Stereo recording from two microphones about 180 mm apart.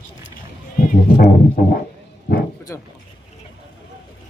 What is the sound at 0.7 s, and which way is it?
Music, 55° left (ahead or behind).